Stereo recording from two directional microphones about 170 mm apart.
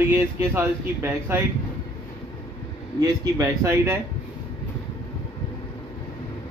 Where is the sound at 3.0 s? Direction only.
20° right (ahead or behind).